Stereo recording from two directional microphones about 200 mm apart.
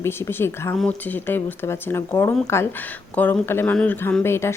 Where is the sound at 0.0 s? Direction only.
10° left (ahead or behind).